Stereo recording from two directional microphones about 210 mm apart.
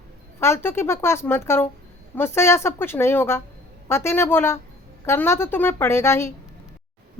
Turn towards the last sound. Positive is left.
turn(degrees=10)  # may be behind; listen again after turning